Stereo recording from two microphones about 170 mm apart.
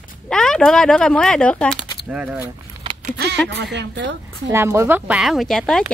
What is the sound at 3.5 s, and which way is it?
Speech, 90° right.